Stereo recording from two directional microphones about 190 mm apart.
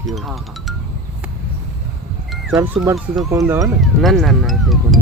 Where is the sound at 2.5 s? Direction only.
15° right (ahead or behind).